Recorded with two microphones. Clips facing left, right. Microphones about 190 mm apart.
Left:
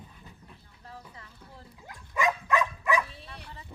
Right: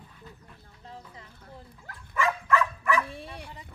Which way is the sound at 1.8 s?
15° left (ahead or behind).